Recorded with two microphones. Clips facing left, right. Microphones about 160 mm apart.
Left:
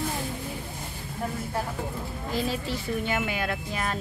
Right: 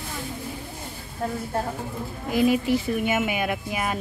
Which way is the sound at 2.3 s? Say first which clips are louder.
Right 9 dB; 15° right (ahead or behind).